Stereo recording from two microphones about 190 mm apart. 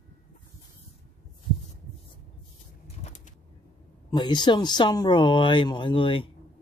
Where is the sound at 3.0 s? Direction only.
35° left (ahead or behind).